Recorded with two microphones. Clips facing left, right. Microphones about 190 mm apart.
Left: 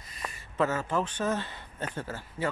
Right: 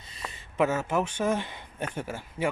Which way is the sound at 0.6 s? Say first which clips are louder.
Right 2 dB; 10° right (ahead or behind).